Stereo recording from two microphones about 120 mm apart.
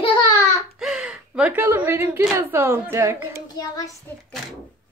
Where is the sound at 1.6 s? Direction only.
20° right (ahead or behind).